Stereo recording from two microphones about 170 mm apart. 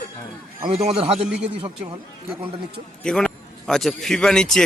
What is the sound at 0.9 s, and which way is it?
Speech, 35° right (ahead or behind).